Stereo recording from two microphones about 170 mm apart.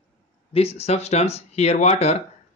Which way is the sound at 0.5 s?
35° left (ahead or behind).